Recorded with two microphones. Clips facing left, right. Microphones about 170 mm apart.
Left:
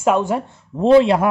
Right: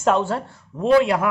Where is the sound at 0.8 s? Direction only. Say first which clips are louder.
Left 4 dB; 30° left (ahead or behind).